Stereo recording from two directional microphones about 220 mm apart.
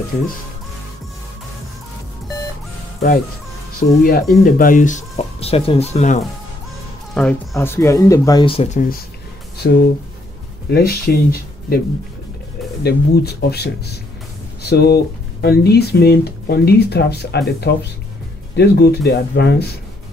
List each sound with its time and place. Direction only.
4.0 s speech: 40° left (ahead or behind)
7.2 s speech: 10° left (ahead or behind); by 8.8 s 25° left (ahead or behind)
9.6 s speech: 45° left (ahead or behind)
12.8 s speech: 45° left (ahead or behind)